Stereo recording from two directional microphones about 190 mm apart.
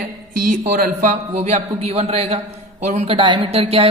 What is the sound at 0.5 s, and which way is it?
A woman's voice, 40° right (ahead or behind).